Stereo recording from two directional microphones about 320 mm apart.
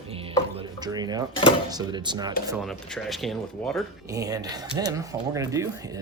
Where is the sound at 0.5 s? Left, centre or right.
Centre.